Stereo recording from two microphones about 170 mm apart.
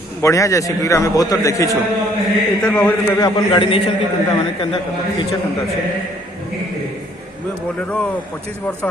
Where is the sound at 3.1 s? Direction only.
25° left (ahead or behind).